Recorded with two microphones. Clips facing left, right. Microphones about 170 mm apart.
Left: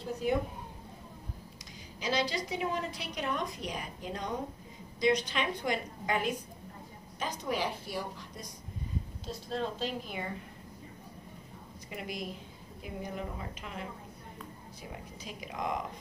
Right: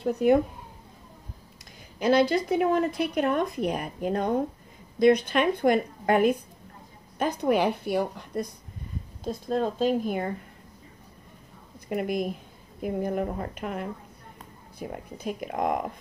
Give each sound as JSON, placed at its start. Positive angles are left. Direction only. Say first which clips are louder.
{"t": 0.0, "sound": "a woman's voice", "louder": "right 10 dB", "side_deg": -60}
{"t": 2.0, "sound": "a woman's voice", "louder": "right 11 dB", "side_deg": -55}
{"t": 11.9, "sound": "a woman's voice", "louder": "right 12 dB", "side_deg": -50}